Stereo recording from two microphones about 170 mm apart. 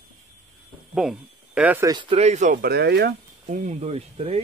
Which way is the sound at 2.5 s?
70° right (ahead or behind).